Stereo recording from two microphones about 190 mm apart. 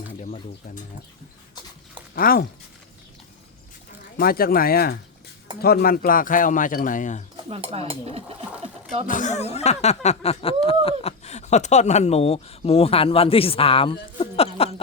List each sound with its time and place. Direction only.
2.1 s speech: 50° left (ahead or behind)
4.2 s speech: 50° left (ahead or behind)
7.3 s a sound: 30° right (ahead or behind)
9.0 s speech: 40° left (ahead or behind)